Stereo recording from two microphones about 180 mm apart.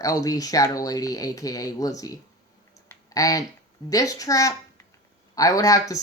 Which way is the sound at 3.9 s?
20° left (ahead or behind).